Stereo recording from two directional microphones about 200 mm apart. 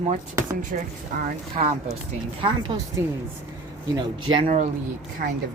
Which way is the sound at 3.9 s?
25° right (ahead or behind).